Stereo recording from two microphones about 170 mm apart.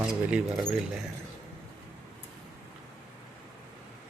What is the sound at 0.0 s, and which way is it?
Speech, 5° right (ahead or behind).